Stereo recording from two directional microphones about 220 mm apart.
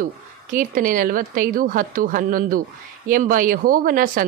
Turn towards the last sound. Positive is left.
turn(degrees=-40)  # may be behind; listen again after turning